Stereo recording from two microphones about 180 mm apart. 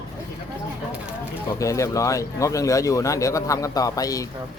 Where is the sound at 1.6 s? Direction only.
20° left (ahead or behind).